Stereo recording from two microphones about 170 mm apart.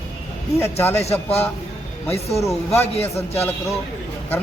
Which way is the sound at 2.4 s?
15° left (ahead or behind).